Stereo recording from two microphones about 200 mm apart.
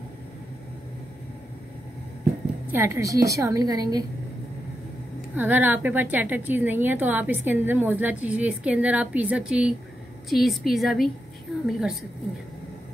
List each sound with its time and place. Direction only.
2.7 s a woman's voice: 10° right (ahead or behind)
5.3 s a woman's voice: 10° right (ahead or behind)